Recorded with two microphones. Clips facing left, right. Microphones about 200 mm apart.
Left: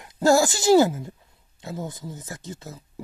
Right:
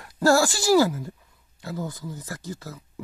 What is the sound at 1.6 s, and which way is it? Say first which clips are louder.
Speech: right 1 dB; 20° left (ahead or behind).